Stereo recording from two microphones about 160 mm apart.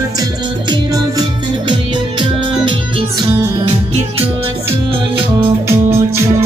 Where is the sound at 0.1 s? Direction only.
25° right (ahead or behind).